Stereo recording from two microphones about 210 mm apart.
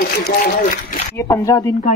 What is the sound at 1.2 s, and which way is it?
Speech, 15° left (ahead or behind).